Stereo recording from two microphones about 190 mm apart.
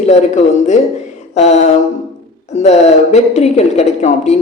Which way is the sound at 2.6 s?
35° left (ahead or behind).